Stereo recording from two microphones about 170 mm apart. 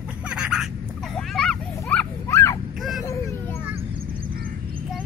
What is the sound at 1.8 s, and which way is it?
Dog, 10° left (ahead or behind).